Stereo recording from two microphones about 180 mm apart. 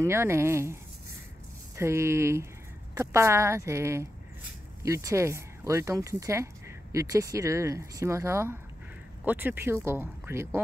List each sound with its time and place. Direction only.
0.0 s speech: 15° right (ahead or behind)
1.8 s speech: 15° right (ahead or behind)